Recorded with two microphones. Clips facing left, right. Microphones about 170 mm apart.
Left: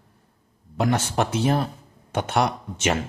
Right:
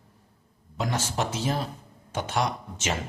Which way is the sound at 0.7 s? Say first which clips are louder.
Left 6 dB; 60° left (ahead or behind).